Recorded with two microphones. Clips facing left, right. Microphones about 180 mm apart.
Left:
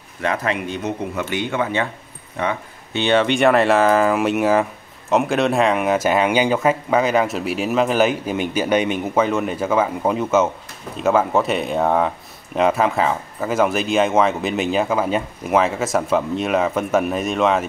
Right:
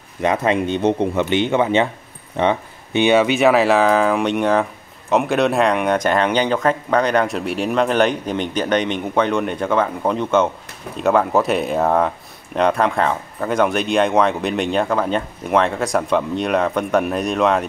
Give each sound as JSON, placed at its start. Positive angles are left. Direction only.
{"t": 0.2, "sound": "speech", "side_deg": -20}
{"t": 2.3, "sound": "keys jangling", "side_deg": -25}
{"t": 3.0, "sound": "speech", "side_deg": -10}